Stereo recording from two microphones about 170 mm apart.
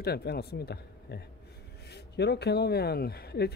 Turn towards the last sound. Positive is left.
turn(degrees=70)  # may be behind; listen again after turning